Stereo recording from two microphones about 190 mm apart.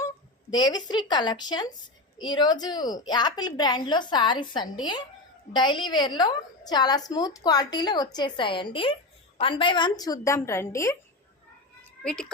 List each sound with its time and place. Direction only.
0.5 s a woman's voice: 20° left (ahead or behind)
12.0 s a child's voice: 5° left (ahead or behind)